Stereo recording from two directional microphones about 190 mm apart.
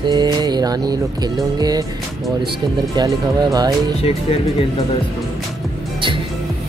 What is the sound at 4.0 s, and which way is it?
Speech, 30° left (ahead or behind).